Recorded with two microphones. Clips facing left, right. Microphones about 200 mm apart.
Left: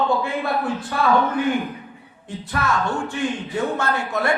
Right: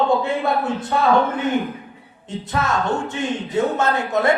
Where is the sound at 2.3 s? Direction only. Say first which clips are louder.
Right 1 dB; 20° right (ahead or behind).